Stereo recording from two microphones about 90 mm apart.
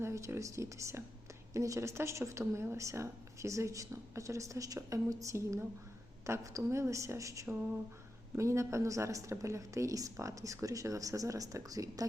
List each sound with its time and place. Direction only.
0.0 s a woman's voice: 30° right (ahead or behind)